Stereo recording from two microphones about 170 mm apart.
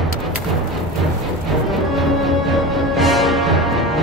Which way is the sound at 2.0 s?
Centre (ahead or behind).